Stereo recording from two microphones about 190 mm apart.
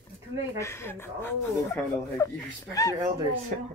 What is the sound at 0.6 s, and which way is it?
Speech, 15° left (ahead or behind).